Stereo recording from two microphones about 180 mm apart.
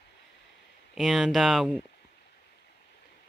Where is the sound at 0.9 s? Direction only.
Centre (ahead or behind).